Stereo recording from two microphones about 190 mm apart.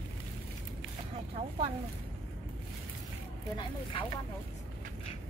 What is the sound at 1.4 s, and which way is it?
Speech, 30° right (ahead or behind).